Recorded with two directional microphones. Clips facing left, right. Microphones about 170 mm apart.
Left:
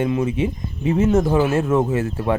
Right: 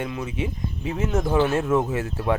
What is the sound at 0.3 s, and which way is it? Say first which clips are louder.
Speech: left 5 dB; centre (ahead or behind).